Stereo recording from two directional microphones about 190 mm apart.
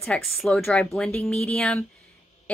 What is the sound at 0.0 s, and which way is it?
A woman's voice, centre (ahead or behind).